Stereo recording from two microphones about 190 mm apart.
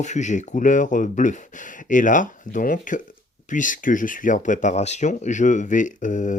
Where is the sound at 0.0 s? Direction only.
40° left (ahead or behind).